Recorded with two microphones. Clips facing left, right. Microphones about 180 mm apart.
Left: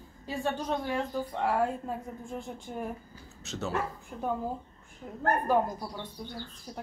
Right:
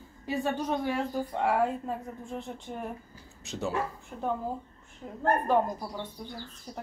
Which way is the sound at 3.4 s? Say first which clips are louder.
Right 2 dB; 15° right (ahead or behind).